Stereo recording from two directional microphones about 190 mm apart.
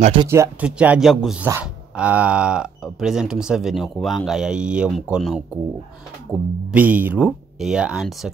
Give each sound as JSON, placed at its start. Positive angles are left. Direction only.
{"t": 0.0, "sound": "speech", "side_deg": -30}
{"t": 0.3, "sound": "speech", "side_deg": -10}
{"t": 6.7, "sound": "speech", "side_deg": -10}